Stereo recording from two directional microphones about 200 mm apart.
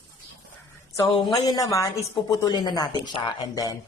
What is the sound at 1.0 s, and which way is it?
A woman's voice, 15° left (ahead or behind).